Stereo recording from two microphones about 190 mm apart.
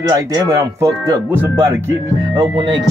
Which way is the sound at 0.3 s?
15° right (ahead or behind).